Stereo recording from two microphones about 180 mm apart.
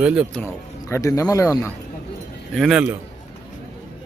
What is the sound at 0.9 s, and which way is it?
Speech, 15° left (ahead or behind).